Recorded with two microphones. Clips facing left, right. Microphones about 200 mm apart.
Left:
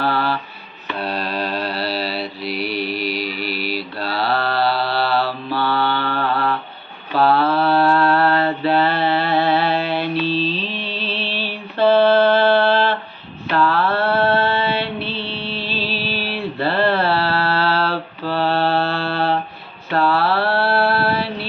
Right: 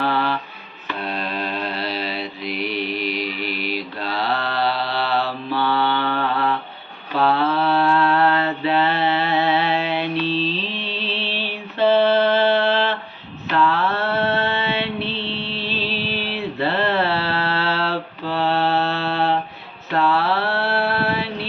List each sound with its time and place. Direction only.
0.0 s a sound: 20° right (ahead or behind)
1.0 s mantra: 35° left (ahead or behind)
2.6 s mantra: 5° left (ahead or behind)
4.1 s mantra: 20° right (ahead or behind)
7.6 s a sound: 55° left (ahead or behind)
8.8 s mantra: 20° right (ahead or behind)
15.8 s music: 5° left (ahead or behind)
16.6 s mantra: 20° right (ahead or behind)